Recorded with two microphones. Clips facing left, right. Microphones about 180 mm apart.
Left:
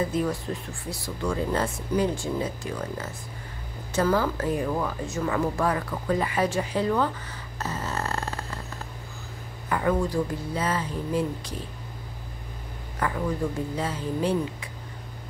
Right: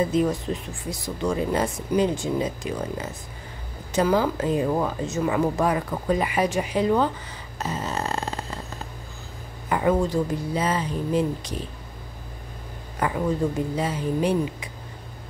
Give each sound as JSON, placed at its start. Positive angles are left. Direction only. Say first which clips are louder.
{"t": 0.0, "sound": "speech", "louder": "right 4 dB", "side_deg": -20}
{"t": 7.5, "sound": "a sound", "louder": "right 3 dB", "side_deg": -15}
{"t": 9.7, "sound": "speech", "louder": "right 3 dB", "side_deg": -20}
{"t": 13.0, "sound": "speech", "louder": "right 3 dB", "side_deg": -20}